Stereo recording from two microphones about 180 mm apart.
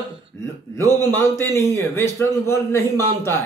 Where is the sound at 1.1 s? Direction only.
15° left (ahead or behind).